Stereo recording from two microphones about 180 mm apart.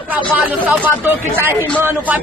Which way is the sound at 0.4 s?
10° right (ahead or behind).